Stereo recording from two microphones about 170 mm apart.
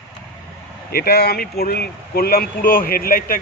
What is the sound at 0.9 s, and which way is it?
Speech, 65° left (ahead or behind).